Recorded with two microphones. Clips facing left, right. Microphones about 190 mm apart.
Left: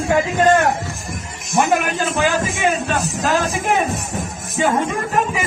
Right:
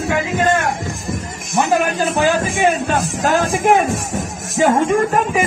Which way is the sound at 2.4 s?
55° right (ahead or behind).